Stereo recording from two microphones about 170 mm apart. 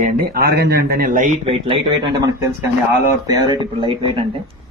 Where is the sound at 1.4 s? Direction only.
35° right (ahead or behind).